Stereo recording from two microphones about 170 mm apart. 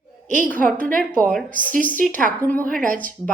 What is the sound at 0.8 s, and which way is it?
Speech, 50° right (ahead or behind).